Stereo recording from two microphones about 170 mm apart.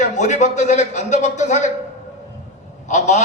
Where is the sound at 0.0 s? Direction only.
45° left (ahead or behind).